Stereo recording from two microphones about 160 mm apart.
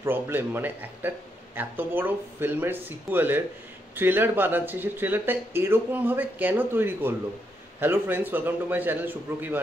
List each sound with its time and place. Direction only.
0.0 s speech: 15° right (ahead or behind)